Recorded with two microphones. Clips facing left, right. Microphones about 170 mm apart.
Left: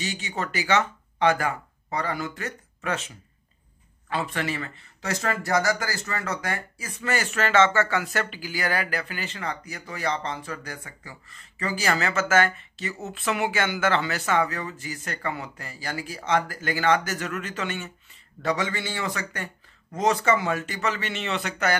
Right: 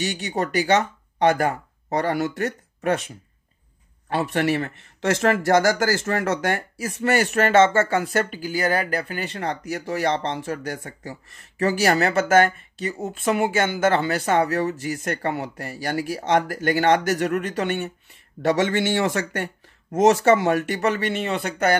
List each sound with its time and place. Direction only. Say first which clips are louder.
0.0 s speech: right 6 dB; 60° right (ahead or behind); by 2.0 s 45° right (ahead or behind)
2.0 s speech: right 7 dB; 65° right (ahead or behind)
4.1 s speech: right 7 dB; 60° right (ahead or behind)
18.6 s speech: right 9 dB; 75° right (ahead or behind); by 21.4 s 50° right (ahead or behind)